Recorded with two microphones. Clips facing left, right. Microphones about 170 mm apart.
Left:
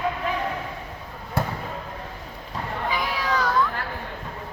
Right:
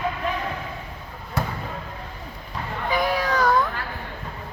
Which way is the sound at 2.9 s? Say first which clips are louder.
Right 5 dB; 50° right (ahead or behind).